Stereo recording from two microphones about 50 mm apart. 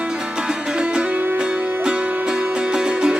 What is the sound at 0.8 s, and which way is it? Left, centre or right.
Music, centre.